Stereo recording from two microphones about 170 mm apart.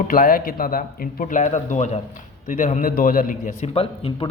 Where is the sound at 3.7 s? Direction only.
35° left (ahead or behind).